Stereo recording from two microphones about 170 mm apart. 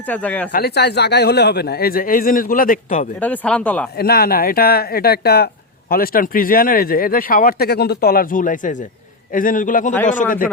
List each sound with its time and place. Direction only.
0.0 s speech: 10° left (ahead or behind)
0.5 s speech: 70° left (ahead or behind); by 3.1 s 50° left (ahead or behind)
3.2 s speech: 10° left (ahead or behind)
3.9 s a man's voice: 65° left (ahead or behind)